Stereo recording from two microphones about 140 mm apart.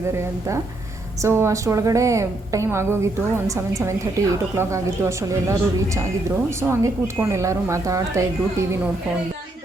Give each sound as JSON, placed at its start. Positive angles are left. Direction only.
{"t": 0.1, "sound": "a woman's voice", "side_deg": -20}